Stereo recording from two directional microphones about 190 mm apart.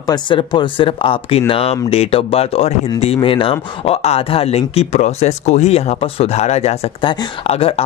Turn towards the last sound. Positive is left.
turn(degrees=30)  # may be behind; listen again after turning